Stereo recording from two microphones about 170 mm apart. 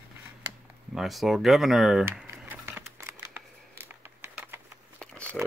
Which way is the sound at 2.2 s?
10° right (ahead or behind).